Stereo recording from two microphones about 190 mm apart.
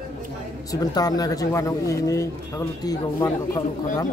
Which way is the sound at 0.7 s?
20° left (ahead or behind).